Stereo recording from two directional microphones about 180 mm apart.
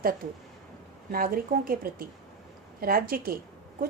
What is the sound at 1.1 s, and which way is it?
Speech, 55° right (ahead or behind).